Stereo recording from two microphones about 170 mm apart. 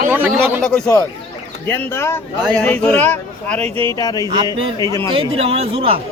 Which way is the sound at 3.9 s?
20° left (ahead or behind).